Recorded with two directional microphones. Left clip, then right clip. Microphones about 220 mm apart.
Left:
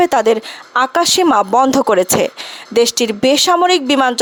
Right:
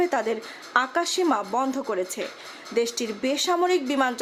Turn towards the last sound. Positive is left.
turn(degrees=45)  # may be behind; listen again after turning